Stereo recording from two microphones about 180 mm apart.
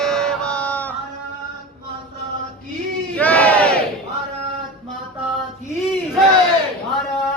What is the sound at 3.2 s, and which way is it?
Battle cry, 10° left (ahead or behind).